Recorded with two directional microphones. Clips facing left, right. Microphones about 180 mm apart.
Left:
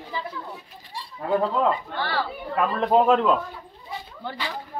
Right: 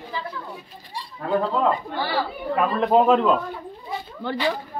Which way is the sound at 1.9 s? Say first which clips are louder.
Right 2 dB; 10° right (ahead or behind).